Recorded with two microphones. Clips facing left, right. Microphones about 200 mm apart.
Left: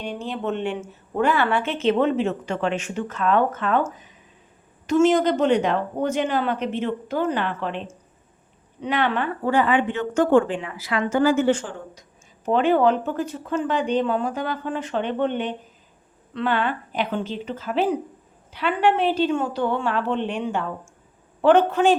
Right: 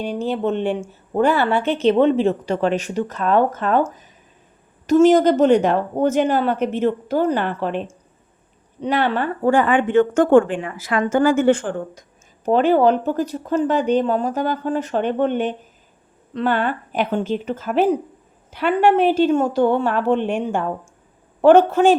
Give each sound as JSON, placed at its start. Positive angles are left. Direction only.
{"t": 0.0, "sound": "speech", "side_deg": -40}
{"t": 1.6, "sound": "a woman's voice", "side_deg": 0}
{"t": 1.9, "sound": "speech", "side_deg": -30}
{"t": 8.8, "sound": "speech", "side_deg": -35}
{"t": 12.5, "sound": "speech", "side_deg": -40}